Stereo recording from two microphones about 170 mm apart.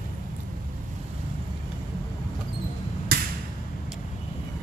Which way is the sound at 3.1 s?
65° right (ahead or behind).